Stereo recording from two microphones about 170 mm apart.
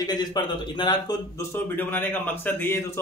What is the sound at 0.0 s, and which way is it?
Speech, 25° left (ahead or behind).